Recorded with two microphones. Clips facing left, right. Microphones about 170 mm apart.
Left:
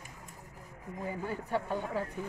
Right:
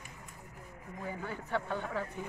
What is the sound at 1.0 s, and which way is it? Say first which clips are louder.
Speech: left 3 dB; 10° left (ahead or behind).